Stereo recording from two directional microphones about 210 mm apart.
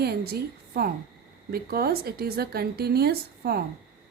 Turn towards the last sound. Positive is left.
turn(degrees=-50)  # may be behind; listen again after turning